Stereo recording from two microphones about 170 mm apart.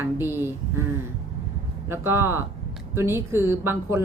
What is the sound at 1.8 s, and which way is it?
A woman's voice, 15° right (ahead or behind).